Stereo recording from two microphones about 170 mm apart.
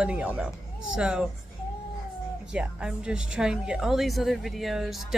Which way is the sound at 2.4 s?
5° right (ahead or behind).